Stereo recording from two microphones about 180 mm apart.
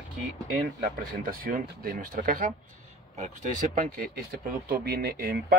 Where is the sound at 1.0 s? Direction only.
55° right (ahead or behind).